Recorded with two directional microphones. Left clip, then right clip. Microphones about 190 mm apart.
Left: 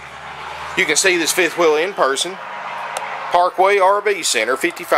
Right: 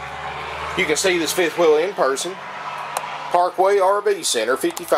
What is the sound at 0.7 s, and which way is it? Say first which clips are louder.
Speech: left 4 dB; 20° left (ahead or behind).